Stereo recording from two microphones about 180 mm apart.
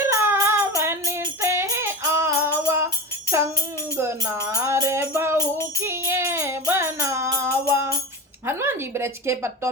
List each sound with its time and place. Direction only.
0.0 s music: 15° right (ahead or behind)
3.9 s music: 15° right (ahead or behind)
8.4 s a woman's voice: 15° right (ahead or behind)